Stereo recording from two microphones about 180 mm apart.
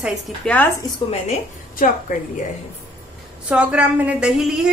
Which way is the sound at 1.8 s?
50° left (ahead or behind).